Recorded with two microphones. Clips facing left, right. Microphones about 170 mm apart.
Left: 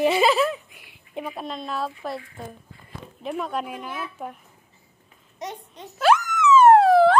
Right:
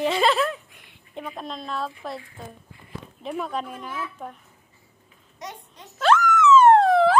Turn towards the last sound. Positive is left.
turn(degrees=5)  # may be behind; listen again after turning